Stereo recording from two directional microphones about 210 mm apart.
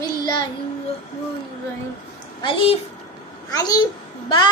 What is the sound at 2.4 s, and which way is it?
A child's voice, 25° left (ahead or behind).